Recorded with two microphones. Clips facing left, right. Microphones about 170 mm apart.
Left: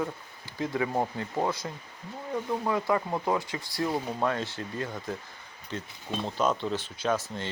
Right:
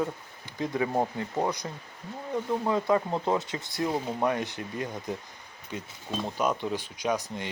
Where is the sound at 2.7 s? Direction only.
20° right (ahead or behind).